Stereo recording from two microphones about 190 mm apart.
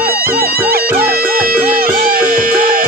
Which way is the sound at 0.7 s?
55° right (ahead or behind).